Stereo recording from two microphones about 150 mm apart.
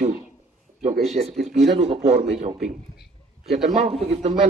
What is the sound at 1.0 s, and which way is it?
A man's voice, 45° right (ahead or behind).